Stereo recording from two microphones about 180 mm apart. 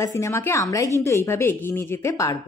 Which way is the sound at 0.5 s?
15° left (ahead or behind).